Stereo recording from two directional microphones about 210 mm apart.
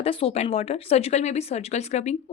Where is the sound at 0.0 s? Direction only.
25° left (ahead or behind).